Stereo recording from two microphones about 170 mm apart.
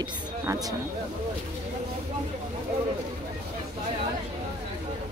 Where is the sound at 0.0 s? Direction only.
20° right (ahead or behind).